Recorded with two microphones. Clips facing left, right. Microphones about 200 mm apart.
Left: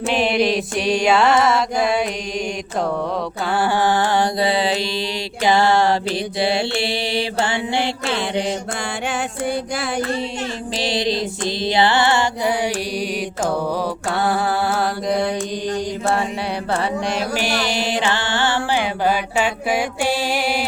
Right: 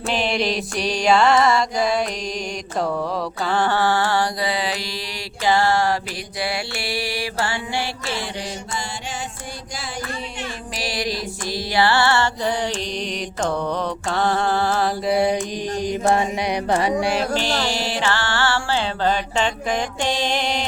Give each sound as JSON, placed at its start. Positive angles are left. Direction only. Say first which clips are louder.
{"t": 0.1, "sound": "mantra", "louder": "left 4 dB", "side_deg": 0}
{"t": 3.5, "sound": "mantra", "louder": "left 2 dB", "side_deg": 10}
{"t": 8.0, "sound": "music", "louder": "left 7 dB", "side_deg": 60}
{"t": 10.8, "sound": "mantra", "louder": "left 5 dB", "side_deg": 25}
{"t": 14.1, "sound": "mantra", "louder": "even", "side_deg": 5}
{"t": 16.7, "sound": "music", "louder": "right 2 dB", "side_deg": -15}
{"t": 17.3, "sound": "music", "louder": "left 1 dB", "side_deg": 15}